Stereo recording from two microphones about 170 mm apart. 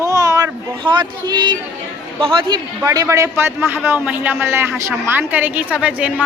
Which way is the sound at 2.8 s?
20° right (ahead or behind).